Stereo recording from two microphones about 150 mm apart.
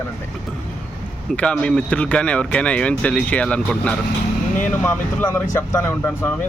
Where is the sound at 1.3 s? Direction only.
5° left (ahead or behind).